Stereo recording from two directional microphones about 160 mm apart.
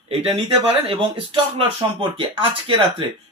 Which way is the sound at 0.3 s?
30° right (ahead or behind).